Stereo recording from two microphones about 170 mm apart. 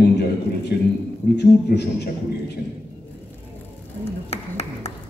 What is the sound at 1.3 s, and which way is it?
Speech, 85° left.